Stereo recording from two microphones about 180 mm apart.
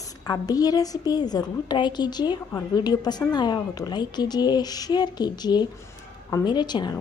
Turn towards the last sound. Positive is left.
turn(degrees=25)  # may be behind; listen again after turning